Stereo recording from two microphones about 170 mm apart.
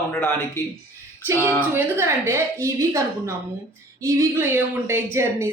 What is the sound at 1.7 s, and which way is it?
A woman's voice, 15° right (ahead or behind).